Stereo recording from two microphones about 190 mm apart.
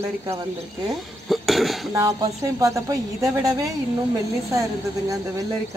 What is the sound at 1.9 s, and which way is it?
Speech, 15° right (ahead or behind).